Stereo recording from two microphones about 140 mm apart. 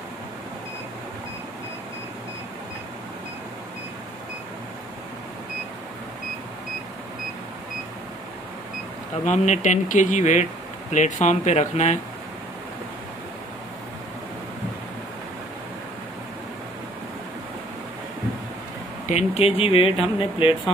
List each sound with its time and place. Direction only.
9.2 s speech: 55° left (ahead or behind)
19.0 s speech: 50° left (ahead or behind)